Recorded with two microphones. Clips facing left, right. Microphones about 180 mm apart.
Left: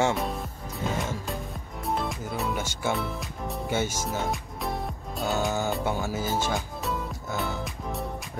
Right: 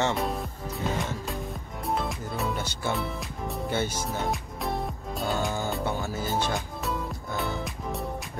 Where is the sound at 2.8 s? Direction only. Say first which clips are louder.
Left 1 dB; centre (ahead or behind).